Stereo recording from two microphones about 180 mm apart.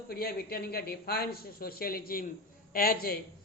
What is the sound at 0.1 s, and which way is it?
A man's voice, 60° left (ahead or behind).